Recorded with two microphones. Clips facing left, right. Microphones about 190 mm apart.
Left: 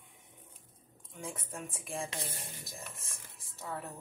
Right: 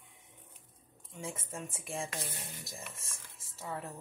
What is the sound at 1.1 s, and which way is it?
Speech, centre (ahead or behind).